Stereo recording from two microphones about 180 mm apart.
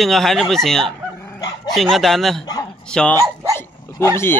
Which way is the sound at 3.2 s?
15° right (ahead or behind).